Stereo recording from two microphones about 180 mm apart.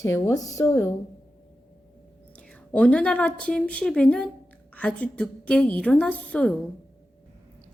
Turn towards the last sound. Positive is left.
turn(degrees=5)  # may be behind; listen again after turning